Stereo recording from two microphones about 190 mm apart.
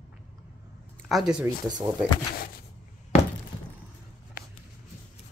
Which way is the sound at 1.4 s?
20° right (ahead or behind).